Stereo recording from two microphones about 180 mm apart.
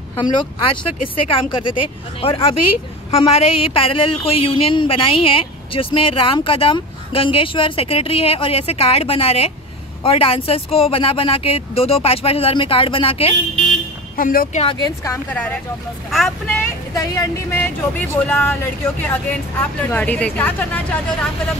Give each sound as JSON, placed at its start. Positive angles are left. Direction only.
{"t": 0.1, "sound": "speech", "side_deg": 25}
{"t": 14.1, "sound": "speech", "side_deg": 50}
{"t": 14.6, "sound": "speech", "side_deg": 25}
{"t": 15.3, "sound": "speech", "side_deg": 5}
{"t": 16.6, "sound": "speech", "side_deg": 20}
{"t": 19.6, "sound": "speech", "side_deg": 10}